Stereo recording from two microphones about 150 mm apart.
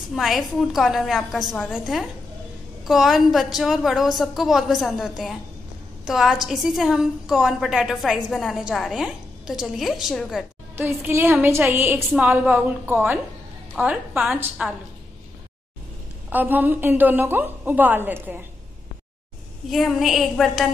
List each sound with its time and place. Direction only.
0.1 s a woman's voice: centre (ahead or behind)
10.8 s a woman's voice: 15° right (ahead or behind)
16.3 s a woman's voice: 10° right (ahead or behind)
19.7 s a woman's voice: centre (ahead or behind)